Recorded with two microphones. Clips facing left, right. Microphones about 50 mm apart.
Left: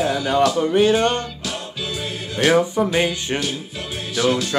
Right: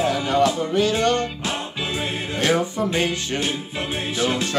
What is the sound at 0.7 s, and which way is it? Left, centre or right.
Speech, left.